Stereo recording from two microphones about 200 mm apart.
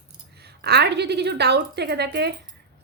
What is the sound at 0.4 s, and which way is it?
A woman's voice, 55° right (ahead or behind).